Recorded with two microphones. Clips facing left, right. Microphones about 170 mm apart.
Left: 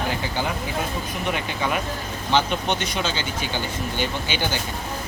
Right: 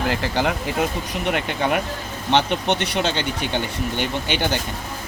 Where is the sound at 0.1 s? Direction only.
75° right (ahead or behind).